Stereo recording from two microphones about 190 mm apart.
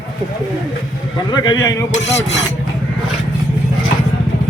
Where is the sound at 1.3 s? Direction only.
20° left (ahead or behind).